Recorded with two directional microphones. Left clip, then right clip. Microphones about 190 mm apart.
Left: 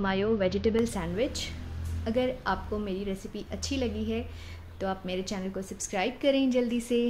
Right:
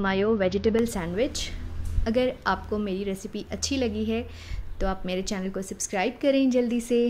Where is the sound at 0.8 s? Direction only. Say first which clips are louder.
Right 3 dB; 30° right (ahead or behind).